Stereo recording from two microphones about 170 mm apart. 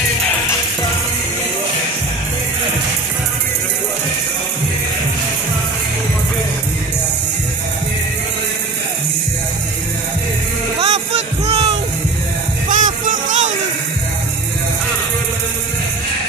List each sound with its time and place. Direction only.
10.8 s music: 40° right (ahead or behind)
12.6 s music: 50° right (ahead or behind)